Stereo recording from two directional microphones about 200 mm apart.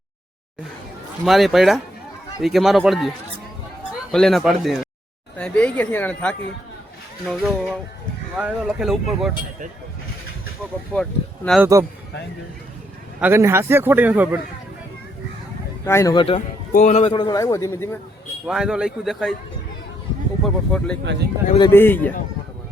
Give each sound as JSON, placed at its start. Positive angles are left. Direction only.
{"t": 1.2, "sound": "speech", "side_deg": 0}
{"t": 4.1, "sound": "speech", "side_deg": 0}
{"t": 10.9, "sound": "speech", "side_deg": 5}
{"t": 11.6, "sound": "a man's voice", "side_deg": -15}
{"t": 13.1, "sound": "a man's voice", "side_deg": -10}
{"t": 15.8, "sound": "speech", "side_deg": 15}
{"t": 16.2, "sound": "a man's voice", "side_deg": 30}
{"t": 18.4, "sound": "speech", "side_deg": -5}
{"t": 20.4, "sound": "speech", "side_deg": 5}